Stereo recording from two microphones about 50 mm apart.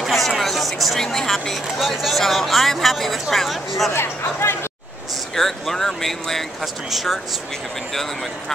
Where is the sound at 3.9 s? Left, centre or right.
Left.